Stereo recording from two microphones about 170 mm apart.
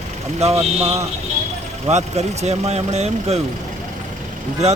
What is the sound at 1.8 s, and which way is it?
Speech, 40° right (ahead or behind).